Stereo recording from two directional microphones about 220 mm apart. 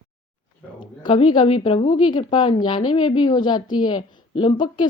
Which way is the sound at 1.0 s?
20° left (ahead or behind).